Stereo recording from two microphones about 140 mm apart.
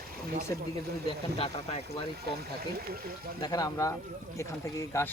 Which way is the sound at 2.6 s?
90° right.